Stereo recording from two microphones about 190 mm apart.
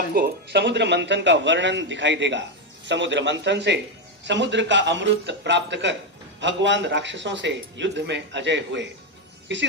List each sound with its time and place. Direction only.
0.1 s a man's voice: 55° right (ahead or behind)